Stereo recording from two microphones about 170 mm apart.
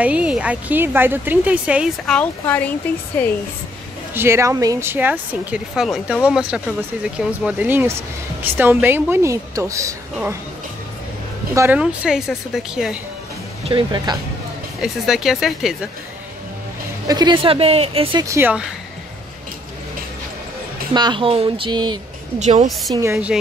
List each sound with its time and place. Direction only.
0.0 s a woman's voice: 5° right (ahead or behind)
2.1 s speech: 10° left (ahead or behind)
4.1 s a woman's voice: 15° right (ahead or behind)
11.5 s a woman's voice: 15° right (ahead or behind)
11.8 s a woman's voice: 5° right (ahead or behind)
13.7 s speech: 30° right (ahead or behind)
14.8 s a woman's voice: centre (ahead or behind)
17.1 s a woman's voice: 25° right (ahead or behind)
18.2 s a woman's voice: 15° right (ahead or behind)
20.9 s speech: 25° right (ahead or behind)
22.4 s a woman's voice: 40° right (ahead or behind)
22.7 s a woman's voice: centre (ahead or behind)
22.9 s a woman's voice: 15° right (ahead or behind)